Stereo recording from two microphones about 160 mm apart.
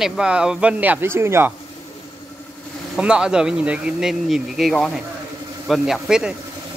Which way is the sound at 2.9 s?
5° right (ahead or behind).